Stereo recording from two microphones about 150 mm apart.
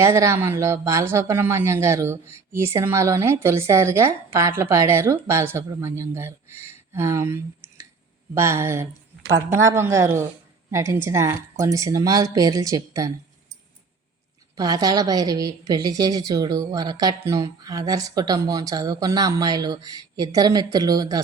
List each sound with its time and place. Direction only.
0.0 s a woman's voice: 20° right (ahead or behind)
14.5 s a woman's voice: 25° right (ahead or behind)